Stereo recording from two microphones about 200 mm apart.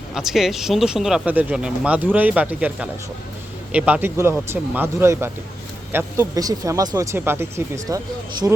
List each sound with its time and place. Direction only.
0.1 s speech: centre (ahead or behind)